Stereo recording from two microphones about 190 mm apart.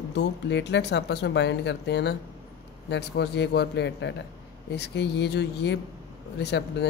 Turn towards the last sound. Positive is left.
turn(degrees=60)  # may be behind; listen again after turning